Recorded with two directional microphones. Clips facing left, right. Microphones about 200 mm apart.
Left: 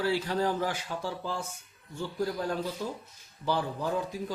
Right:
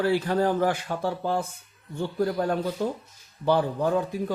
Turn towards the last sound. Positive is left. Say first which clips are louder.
# right 7 dB
turn(degrees=-60)  # may be behind; listen again after turning